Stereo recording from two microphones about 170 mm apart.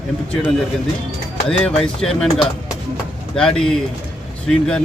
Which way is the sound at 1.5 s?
5° left (ahead or behind).